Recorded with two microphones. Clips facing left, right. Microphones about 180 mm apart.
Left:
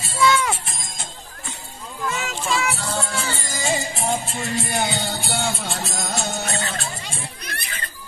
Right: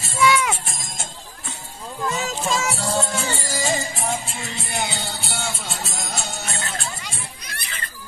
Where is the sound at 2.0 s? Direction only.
40° right (ahead or behind).